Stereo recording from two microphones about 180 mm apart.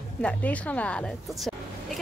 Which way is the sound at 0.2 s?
5° left (ahead or behind).